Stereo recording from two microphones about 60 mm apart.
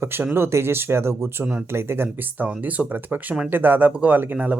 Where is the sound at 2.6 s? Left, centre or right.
Right.